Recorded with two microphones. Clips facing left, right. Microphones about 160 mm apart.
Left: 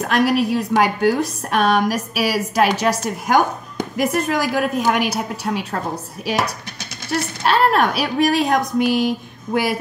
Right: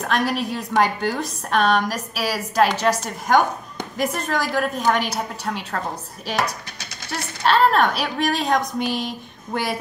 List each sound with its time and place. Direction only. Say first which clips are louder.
0.0 s a woman's voice: left 5 dB; 5° left (ahead or behind)
7.4 s a woman's voice: even; 10° left (ahead or behind)